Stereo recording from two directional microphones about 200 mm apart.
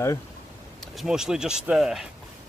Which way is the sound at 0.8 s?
Centre (ahead or behind).